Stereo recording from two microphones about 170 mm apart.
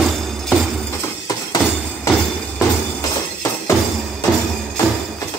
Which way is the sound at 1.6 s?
5° left (ahead or behind).